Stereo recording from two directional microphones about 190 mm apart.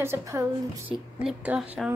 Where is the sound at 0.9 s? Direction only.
5° right (ahead or behind).